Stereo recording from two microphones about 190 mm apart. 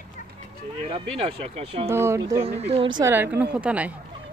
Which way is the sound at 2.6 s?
30° right (ahead or behind).